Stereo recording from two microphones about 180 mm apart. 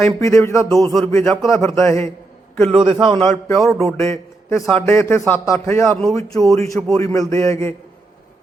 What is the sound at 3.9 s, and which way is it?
A man's voice, 15° left (ahead or behind).